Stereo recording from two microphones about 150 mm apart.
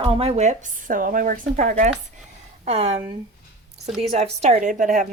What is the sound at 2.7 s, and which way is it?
Speech, 45° right (ahead or behind).